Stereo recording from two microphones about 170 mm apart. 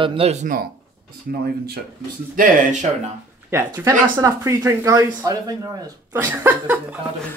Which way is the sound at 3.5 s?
15° right (ahead or behind).